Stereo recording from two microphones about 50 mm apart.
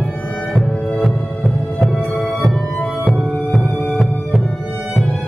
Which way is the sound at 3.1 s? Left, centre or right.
Centre.